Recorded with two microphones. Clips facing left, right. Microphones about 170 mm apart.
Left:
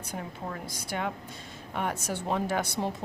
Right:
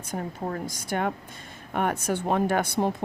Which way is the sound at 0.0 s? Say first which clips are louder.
Right 5 dB; 45° right (ahead or behind).